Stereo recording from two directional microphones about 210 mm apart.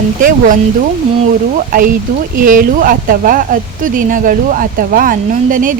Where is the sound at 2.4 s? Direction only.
40° right (ahead or behind).